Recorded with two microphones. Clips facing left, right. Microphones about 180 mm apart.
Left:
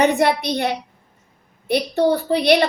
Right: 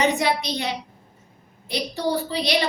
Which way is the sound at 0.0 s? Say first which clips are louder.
Left 5 dB; 60° left (ahead or behind).